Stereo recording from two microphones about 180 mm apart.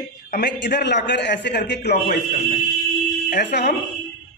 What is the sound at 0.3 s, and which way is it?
A man's voice, 65° left (ahead or behind).